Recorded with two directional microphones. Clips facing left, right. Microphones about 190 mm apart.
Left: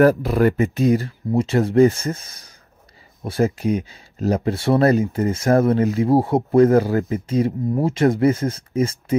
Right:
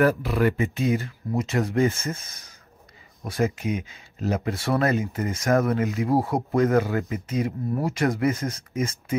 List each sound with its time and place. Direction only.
0.0 s speech: 35° left (ahead or behind)